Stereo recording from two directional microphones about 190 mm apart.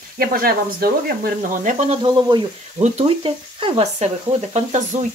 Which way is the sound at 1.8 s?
30° right (ahead or behind).